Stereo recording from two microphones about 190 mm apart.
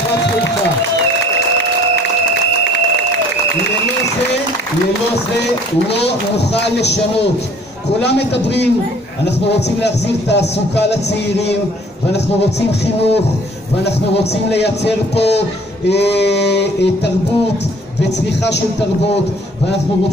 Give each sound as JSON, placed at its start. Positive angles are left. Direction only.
{"t": 5.9, "sound": "speech", "side_deg": 65}
{"t": 8.0, "sound": "speech", "side_deg": 65}
{"t": 14.5, "sound": "speech", "side_deg": 60}
{"t": 18.4, "sound": "speech", "side_deg": 65}